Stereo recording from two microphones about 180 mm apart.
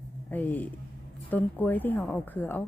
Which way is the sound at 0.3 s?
10° left (ahead or behind).